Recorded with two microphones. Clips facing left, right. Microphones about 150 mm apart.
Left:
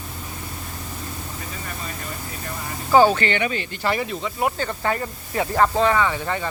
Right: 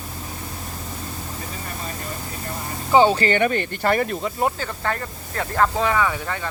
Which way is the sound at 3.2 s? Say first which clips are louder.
Right 4 dB; 45° right (ahead or behind).